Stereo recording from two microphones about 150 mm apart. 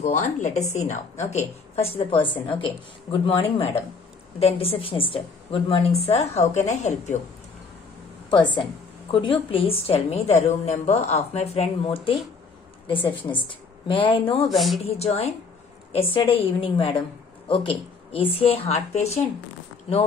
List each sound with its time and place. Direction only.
0.0 s a woman's voice: 55° left (ahead or behind)
8.3 s a woman's voice: 30° left (ahead or behind)
14.5 s speech: centre (ahead or behind)
14.9 s a woman's voice: 45° left (ahead or behind)